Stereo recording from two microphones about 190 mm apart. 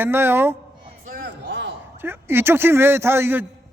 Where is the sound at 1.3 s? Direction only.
70° right (ahead or behind).